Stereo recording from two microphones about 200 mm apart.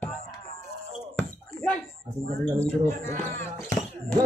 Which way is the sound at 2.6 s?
10° left (ahead or behind).